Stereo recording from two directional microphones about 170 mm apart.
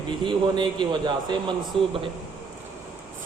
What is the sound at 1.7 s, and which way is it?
Speech, 5° left (ahead or behind).